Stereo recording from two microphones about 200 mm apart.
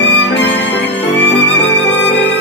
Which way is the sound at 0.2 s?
60° left (ahead or behind).